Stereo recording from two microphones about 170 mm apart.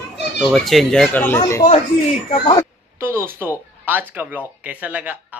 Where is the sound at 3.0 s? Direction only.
15° right (ahead or behind).